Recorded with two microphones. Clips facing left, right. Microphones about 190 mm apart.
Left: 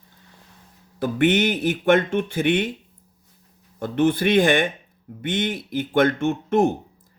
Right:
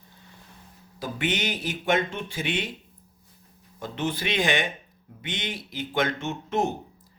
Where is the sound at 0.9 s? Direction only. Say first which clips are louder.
Left 10 dB; 55° left (ahead or behind).